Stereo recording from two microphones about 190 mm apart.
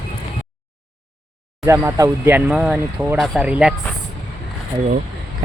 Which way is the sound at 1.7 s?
15° right (ahead or behind).